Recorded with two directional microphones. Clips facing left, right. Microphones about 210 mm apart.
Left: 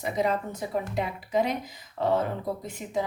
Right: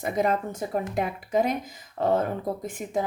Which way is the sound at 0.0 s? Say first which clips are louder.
Right 2 dB; 50° right (ahead or behind).